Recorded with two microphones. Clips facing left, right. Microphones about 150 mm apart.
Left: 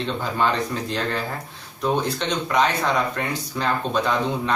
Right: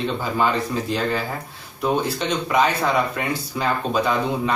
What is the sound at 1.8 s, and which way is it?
Speech, 5° right (ahead or behind).